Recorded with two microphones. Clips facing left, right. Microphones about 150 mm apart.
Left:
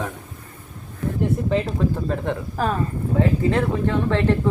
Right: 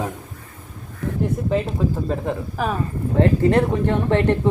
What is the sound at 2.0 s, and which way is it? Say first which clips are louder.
Speech: right 1 dB; 5° right (ahead or behind).